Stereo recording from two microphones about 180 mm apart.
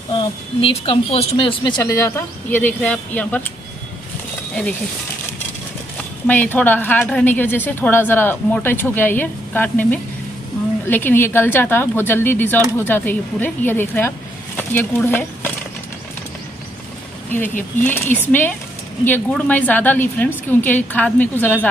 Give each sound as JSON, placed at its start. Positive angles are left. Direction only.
{"t": 0.2, "sound": "a woman's voice", "side_deg": 30}
{"t": 6.2, "sound": "a woman's voice", "side_deg": 10}
{"t": 17.3, "sound": "a woman's voice", "side_deg": 10}